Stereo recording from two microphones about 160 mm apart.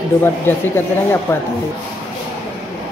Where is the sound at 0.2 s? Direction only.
15° left (ahead or behind).